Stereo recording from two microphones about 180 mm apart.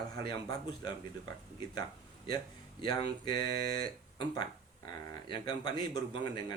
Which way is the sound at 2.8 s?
25° left (ahead or behind).